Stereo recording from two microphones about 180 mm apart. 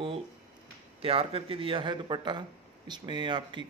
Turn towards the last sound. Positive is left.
turn(degrees=-25)  # may be behind; listen again after turning